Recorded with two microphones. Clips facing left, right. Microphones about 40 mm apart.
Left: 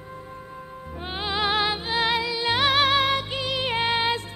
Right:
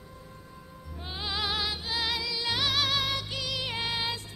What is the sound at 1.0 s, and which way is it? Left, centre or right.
Music, left.